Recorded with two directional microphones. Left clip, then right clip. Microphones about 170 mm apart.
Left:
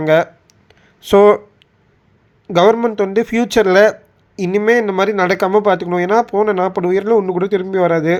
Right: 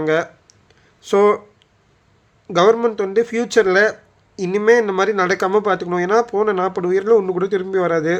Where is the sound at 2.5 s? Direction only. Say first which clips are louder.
Left 2 dB; 15° left (ahead or behind).